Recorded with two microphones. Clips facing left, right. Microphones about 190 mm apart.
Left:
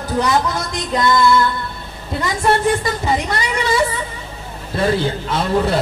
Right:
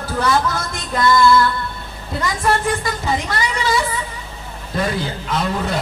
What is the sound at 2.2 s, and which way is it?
A woman's voice, 25° left (ahead or behind).